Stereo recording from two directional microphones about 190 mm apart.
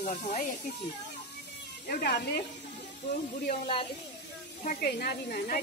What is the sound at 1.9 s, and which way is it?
Speech, 55° left (ahead or behind).